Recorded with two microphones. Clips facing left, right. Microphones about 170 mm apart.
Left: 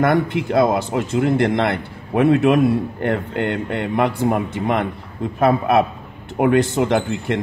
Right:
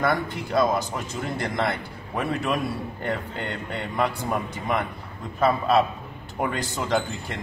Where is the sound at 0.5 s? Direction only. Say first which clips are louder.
Left 4 dB; 60° left (ahead or behind).